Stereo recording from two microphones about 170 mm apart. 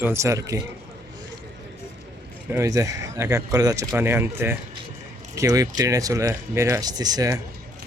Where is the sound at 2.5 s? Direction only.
20° right (ahead or behind).